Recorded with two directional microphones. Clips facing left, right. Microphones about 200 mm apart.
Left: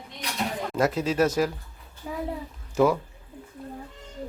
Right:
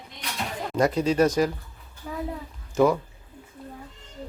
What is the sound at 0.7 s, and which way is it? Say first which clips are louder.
Speech: right 3 dB; 5° left (ahead or behind).